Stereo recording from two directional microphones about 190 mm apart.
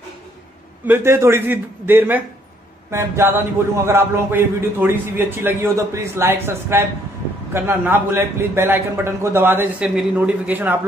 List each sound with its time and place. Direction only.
0.8 s a man's voice: 10° right (ahead or behind)